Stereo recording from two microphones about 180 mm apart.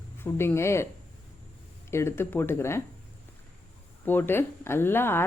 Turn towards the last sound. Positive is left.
turn(degrees=10)  # may be behind; listen again after turning